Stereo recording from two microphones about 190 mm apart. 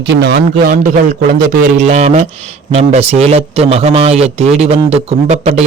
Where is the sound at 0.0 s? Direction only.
65° right (ahead or behind).